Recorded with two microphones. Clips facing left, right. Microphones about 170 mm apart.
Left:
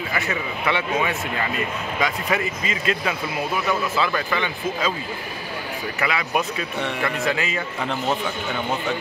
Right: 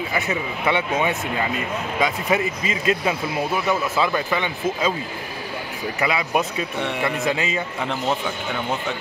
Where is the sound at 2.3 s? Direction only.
20° right (ahead or behind).